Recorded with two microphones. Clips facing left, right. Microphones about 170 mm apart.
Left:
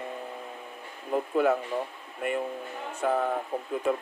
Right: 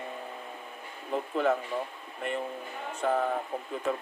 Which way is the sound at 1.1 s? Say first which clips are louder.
Left 3 dB; 5° left (ahead or behind).